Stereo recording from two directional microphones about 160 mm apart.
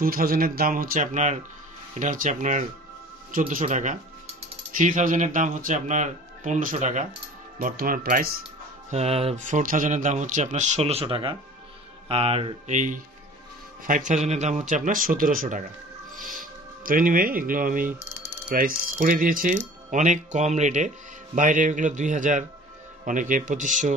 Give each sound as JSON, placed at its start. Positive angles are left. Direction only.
{"t": 0.0, "sound": "speech", "side_deg": -65}
{"t": 7.5, "sound": "speech", "side_deg": -65}
{"t": 8.9, "sound": "speech", "side_deg": -40}
{"t": 9.5, "sound": "speech", "side_deg": -55}
{"t": 16.2, "sound": "music", "side_deg": 0}
{"t": 16.8, "sound": "speech", "side_deg": -60}